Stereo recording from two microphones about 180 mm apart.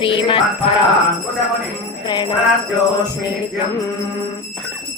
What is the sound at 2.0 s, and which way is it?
Mantra, 25° left (ahead or behind).